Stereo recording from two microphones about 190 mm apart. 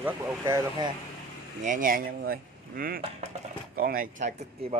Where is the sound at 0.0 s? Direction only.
15° right (ahead or behind).